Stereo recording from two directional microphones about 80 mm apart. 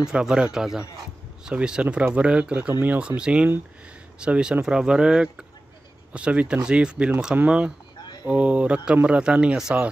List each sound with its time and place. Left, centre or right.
0.0 s a man's voice: centre